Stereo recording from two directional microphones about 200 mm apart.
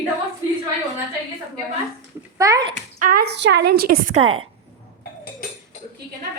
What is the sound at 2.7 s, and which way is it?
Speech, 45° right (ahead or behind).